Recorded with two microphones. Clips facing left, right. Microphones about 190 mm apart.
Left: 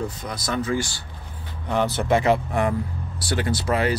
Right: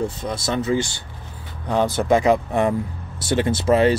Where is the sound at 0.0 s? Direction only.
25° right (ahead or behind).